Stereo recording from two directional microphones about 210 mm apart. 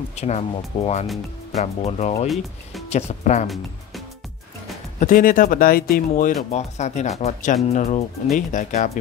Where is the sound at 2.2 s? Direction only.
Centre (ahead or behind).